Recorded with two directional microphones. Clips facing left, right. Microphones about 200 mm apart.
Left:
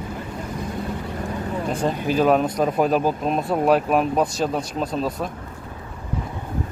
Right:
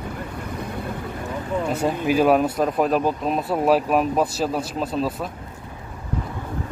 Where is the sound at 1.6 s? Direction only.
5° right (ahead or behind).